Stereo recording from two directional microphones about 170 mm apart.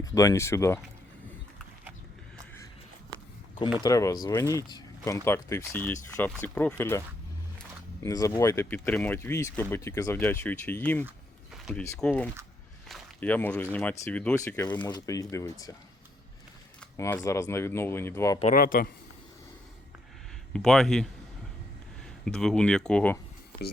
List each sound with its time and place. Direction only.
0.0 s speech: 20° left (ahead or behind)
3.8 s speech: 20° left (ahead or behind)
8.0 s speech: 20° left (ahead or behind)
11.5 s a sound: centre (ahead or behind)
11.9 s speech: 5° left (ahead or behind)
17.2 s speech: 15° left (ahead or behind)
18.5 s speech: 60° left (ahead or behind)
20.5 s speech: 5° left (ahead or behind)
22.3 s speech: 5° left (ahead or behind)